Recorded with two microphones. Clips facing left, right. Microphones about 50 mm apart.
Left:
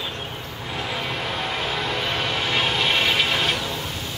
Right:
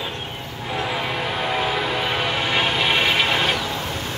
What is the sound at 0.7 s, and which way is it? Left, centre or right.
Train, centre.